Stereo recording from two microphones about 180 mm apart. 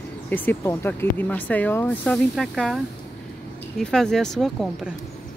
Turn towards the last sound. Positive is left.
turn(degrees=0)  # may be behind; listen again after turning